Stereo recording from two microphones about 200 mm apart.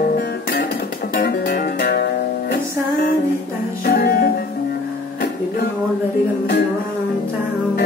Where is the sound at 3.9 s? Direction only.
45° left (ahead or behind).